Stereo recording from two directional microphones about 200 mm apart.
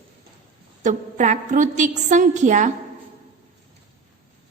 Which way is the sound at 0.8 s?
40° right (ahead or behind).